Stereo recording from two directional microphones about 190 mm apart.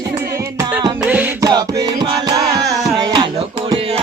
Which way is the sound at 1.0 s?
10° right (ahead or behind).